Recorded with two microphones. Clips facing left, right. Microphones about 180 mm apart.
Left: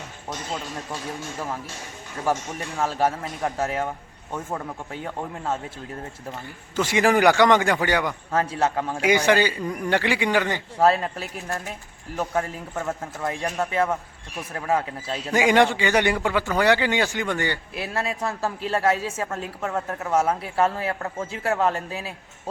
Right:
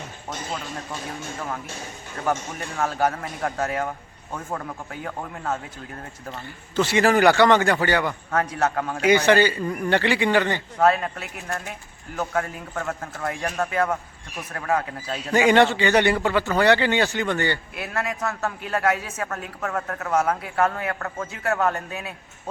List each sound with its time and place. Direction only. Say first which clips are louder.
2.7 s a man's voice: even; 25° left (ahead or behind)
4.9 s a man's voice: left 3 dB; 25° left (ahead or behind)
6.3 s a man's voice: right 3 dB; 10° left (ahead or behind)
8.3 s a man's voice: left 1 dB; 25° left (ahead or behind)
9.0 s a man's voice: right 2 dB; 10° left (ahead or behind)
10.8 s a man's voice: left 1 dB; 30° left (ahead or behind)
15.3 s a man's voice: right 1 dB; 10° left (ahead or behind)
17.7 s a man's voice: left 1 dB; 30° left (ahead or behind)